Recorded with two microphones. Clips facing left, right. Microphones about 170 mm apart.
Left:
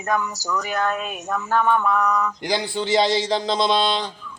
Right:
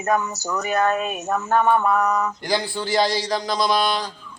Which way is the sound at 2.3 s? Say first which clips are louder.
Even; 20° left (ahead or behind).